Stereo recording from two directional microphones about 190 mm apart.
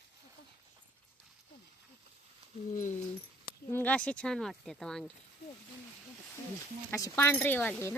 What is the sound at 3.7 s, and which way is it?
Speech, 10° left (ahead or behind).